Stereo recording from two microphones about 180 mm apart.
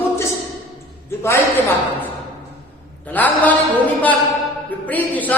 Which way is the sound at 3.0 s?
10° left (ahead or behind).